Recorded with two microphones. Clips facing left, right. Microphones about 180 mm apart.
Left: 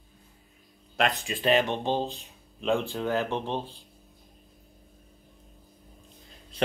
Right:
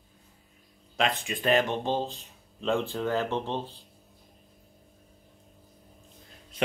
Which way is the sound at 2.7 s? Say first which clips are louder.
Left 1 dB; centre (ahead or behind).